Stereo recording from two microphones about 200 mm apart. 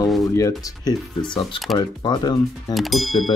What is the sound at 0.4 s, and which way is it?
Speech, 20° left (ahead or behind).